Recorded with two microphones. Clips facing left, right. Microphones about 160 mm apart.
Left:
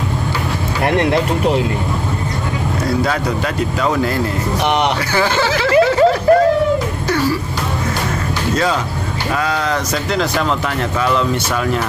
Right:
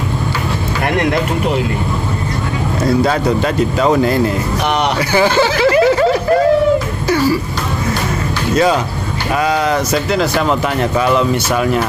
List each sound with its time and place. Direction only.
0.8 s speech: 30° left (ahead or behind)
3.8 s speech: 25° right (ahead or behind)
9.4 s speech: 15° right (ahead or behind)